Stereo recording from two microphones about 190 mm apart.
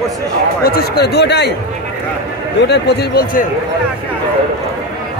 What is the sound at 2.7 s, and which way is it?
Speech, 60° left (ahead or behind).